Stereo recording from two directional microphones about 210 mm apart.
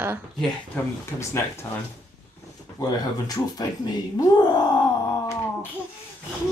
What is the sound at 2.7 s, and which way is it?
Speech, 15° left (ahead or behind).